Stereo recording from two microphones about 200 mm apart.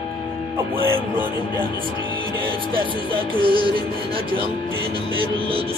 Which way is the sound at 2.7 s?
25° right (ahead or behind).